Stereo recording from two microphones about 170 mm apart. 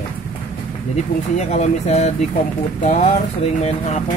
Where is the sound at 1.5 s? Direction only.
45° left (ahead or behind).